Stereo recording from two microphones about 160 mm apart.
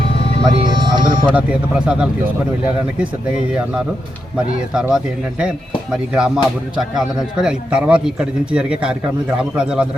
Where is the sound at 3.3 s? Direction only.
5° right (ahead or behind).